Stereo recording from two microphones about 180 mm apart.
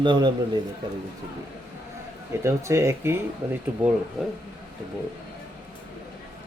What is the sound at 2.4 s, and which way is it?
Speech, 15° right (ahead or behind).